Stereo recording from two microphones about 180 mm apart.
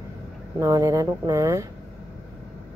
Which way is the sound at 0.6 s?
20° right (ahead or behind).